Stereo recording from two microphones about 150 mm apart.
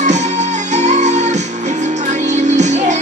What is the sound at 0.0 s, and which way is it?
Music, 50° right (ahead or behind).